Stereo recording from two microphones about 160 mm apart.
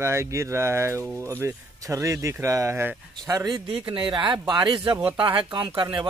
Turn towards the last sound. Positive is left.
turn(degrees=-30)  # may be behind; listen again after turning